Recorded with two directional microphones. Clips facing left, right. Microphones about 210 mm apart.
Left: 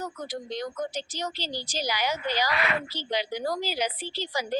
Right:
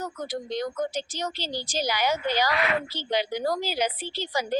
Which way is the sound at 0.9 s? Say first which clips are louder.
Right 2 dB; 50° right (ahead or behind).